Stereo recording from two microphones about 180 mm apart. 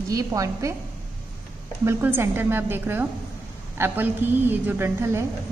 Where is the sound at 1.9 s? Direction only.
10° right (ahead or behind).